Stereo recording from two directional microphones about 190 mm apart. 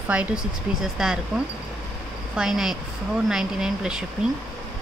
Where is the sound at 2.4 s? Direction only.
Centre (ahead or behind).